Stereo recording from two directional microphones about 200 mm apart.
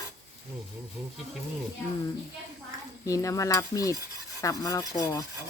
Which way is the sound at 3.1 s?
15° left (ahead or behind).